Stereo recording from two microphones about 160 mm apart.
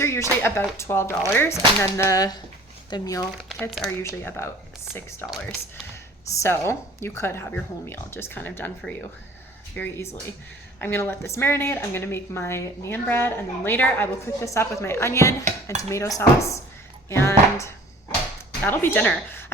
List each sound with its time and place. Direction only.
0.0 s speech: 15° left (ahead or behind)
2.9 s dishes: 20° left (ahead or behind)
3.5 s speech: centre (ahead or behind)
5.2 s speech: centre (ahead or behind)
5.9 s speech: 15° left (ahead or behind)
10.8 s speech: 15° left (ahead or behind)
15.8 s dishes: 20° left (ahead or behind)
17.1 s speech: 15° left (ahead or behind)